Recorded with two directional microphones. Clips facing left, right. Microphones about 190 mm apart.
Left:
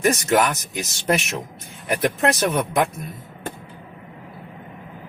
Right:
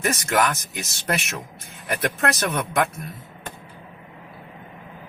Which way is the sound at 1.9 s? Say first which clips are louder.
Left 4 dB; 15° left (ahead or behind).